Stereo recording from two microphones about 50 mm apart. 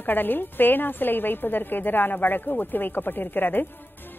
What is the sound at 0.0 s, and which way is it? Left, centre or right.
A woman's voice, left.